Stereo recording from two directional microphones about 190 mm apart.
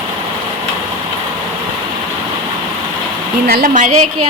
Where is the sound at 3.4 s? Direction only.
50° right (ahead or behind).